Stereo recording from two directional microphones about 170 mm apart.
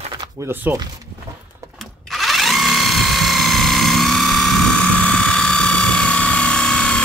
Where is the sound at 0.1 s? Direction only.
20° right (ahead or behind).